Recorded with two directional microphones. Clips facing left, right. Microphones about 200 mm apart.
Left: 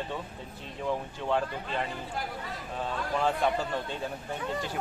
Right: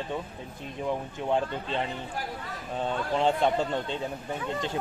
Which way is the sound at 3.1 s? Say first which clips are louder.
Right 3 dB; 25° right (ahead or behind).